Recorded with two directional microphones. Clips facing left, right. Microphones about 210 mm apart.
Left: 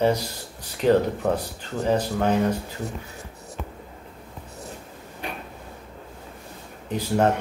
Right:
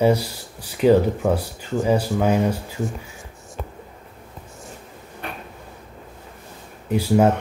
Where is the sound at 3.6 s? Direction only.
40° right (ahead or behind).